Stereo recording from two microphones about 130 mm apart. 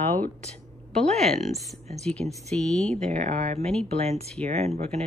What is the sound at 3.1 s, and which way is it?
Speech, 65° right (ahead or behind).